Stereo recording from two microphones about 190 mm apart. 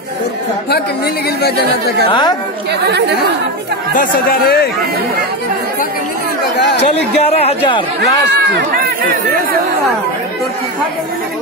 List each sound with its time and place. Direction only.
2.0 s a woman's voice: 25° left (ahead or behind)
3.9 s speech: 45° left (ahead or behind)
6.6 s speech: 60° left (ahead or behind)
7.2 s speech: 30° left (ahead or behind)
8.5 s speech: 50° right (ahead or behind)